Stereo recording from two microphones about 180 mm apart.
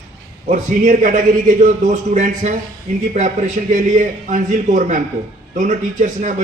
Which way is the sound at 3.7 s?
40° right (ahead or behind).